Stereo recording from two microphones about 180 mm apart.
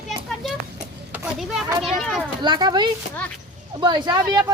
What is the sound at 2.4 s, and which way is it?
Speech, 25° right (ahead or behind).